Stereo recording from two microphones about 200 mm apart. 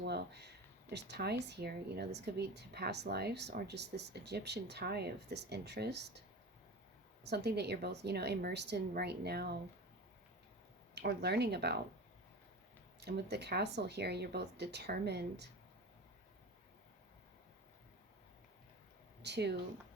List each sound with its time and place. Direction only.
0.0 s speech: 55° right (ahead or behind)
7.3 s speech: 55° right (ahead or behind)
10.9 s speech: 55° right (ahead or behind)
13.0 s speech: 55° right (ahead or behind)
19.2 s speech: 55° right (ahead or behind)